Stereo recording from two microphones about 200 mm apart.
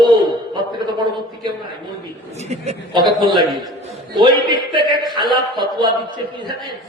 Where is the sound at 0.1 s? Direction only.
20° right (ahead or behind).